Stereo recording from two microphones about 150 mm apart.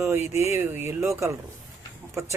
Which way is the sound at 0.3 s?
20° right (ahead or behind).